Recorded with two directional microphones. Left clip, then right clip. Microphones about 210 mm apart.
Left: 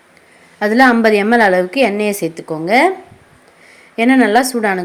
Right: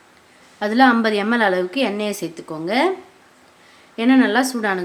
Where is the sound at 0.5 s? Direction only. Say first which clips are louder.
Left 4 dB; 15° left (ahead or behind).